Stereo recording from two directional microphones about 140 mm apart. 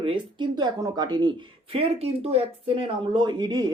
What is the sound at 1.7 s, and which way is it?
Speech, 45° right (ahead or behind).